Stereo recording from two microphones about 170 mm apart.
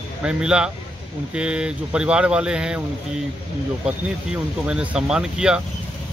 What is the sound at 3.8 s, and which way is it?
Speech, 5° right (ahead or behind).